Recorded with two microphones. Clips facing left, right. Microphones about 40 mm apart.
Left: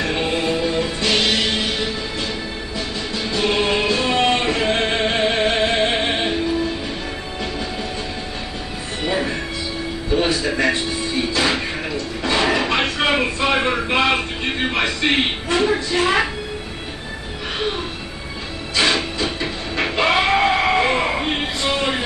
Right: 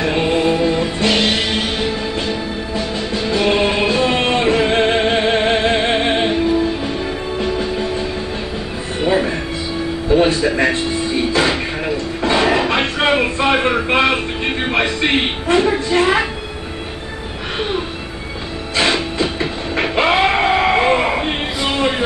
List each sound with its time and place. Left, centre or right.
0.0 s music: right
3.3 s choir: right
5.0 s music: right
9.0 s music: right
12.2 s a sound: right
13.8 s music: right
14.7 s a sound: right
18.8 s train: right